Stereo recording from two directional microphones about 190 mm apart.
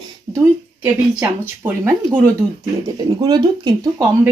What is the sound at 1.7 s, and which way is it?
Speech, 10° right (ahead or behind).